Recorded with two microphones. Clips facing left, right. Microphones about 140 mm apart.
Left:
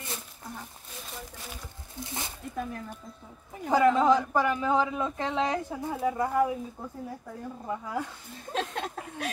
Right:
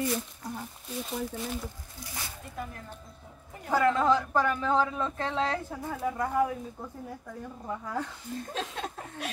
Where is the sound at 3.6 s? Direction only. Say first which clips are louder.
Left 3 dB; 15° left (ahead or behind).